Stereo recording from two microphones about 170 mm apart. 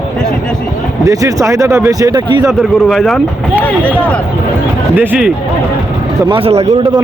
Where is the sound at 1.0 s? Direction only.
20° right (ahead or behind).